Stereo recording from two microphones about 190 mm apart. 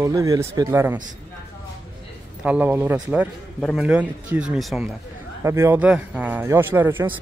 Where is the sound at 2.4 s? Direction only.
10° right (ahead or behind).